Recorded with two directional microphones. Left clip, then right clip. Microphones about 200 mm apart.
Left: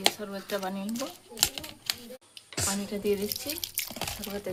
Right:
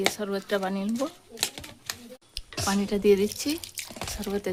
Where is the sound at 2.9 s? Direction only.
55° right (ahead or behind).